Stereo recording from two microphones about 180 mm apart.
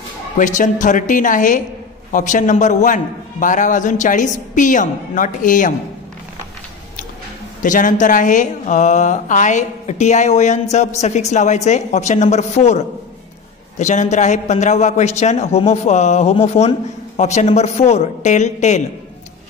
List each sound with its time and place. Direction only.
0.4 s a man's voice: 45° left (ahead or behind)
7.6 s speech: 45° left (ahead or behind)